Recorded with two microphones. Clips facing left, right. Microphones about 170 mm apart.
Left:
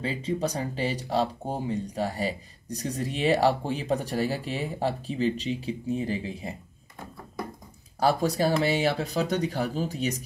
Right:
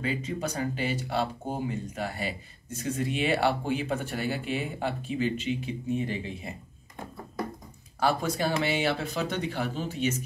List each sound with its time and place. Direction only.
0.0 s speech: 35° left (ahead or behind)
8.0 s speech: 35° left (ahead or behind)